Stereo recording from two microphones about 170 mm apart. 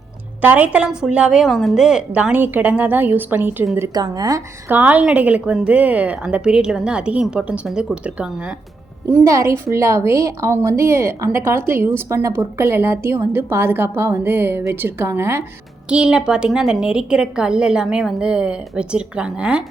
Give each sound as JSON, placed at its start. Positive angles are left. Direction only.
{"t": 0.4, "sound": "a woman's voice", "side_deg": -10}
{"t": 3.8, "sound": "a woman's voice", "side_deg": -25}
{"t": 4.7, "sound": "a woman's voice", "side_deg": -10}
{"t": 9.1, "sound": "a woman's voice", "side_deg": -15}